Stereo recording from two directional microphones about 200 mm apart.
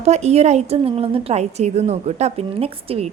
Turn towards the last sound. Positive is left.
turn(degrees=-30)  # may be behind; listen again after turning